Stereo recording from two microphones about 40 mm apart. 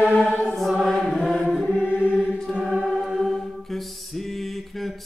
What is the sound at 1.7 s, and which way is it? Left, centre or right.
Chant, right.